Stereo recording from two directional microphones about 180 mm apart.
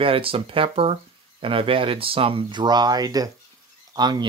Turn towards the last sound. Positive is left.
turn(degrees=-25)  # may be behind; listen again after turning